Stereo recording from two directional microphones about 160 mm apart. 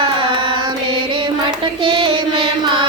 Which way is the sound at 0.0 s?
30° right (ahead or behind).